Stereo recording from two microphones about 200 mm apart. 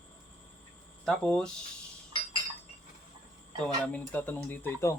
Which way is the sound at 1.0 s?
5° left (ahead or behind).